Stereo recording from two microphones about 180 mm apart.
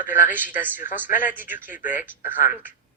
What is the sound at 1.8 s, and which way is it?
Speech, 45° left (ahead or behind).